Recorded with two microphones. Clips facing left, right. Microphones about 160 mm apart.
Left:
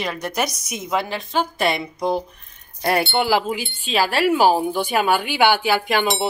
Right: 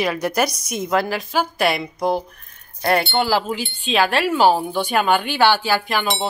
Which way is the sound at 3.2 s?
15° left (ahead or behind).